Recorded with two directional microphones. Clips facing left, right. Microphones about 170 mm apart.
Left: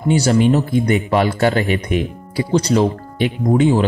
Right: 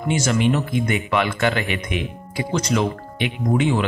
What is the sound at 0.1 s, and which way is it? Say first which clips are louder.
A man's voice: left 6 dB; 35° left (ahead or behind).